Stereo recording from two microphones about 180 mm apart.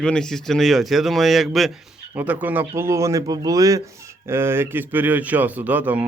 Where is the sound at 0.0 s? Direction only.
5° left (ahead or behind).